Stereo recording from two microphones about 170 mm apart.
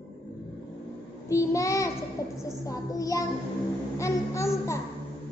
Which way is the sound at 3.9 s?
15° left (ahead or behind).